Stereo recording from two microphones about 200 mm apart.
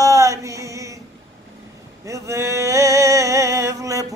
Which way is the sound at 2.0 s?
15° right (ahead or behind).